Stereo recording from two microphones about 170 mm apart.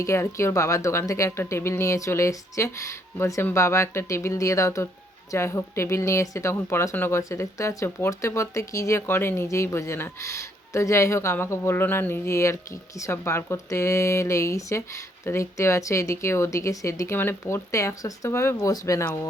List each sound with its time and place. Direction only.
0.0 s speech: 15° left (ahead or behind)